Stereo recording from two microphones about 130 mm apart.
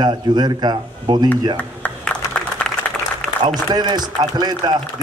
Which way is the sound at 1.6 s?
15° left (ahead or behind).